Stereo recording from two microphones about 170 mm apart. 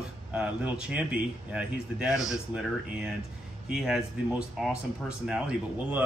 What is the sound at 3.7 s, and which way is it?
Speech, 5° right (ahead or behind).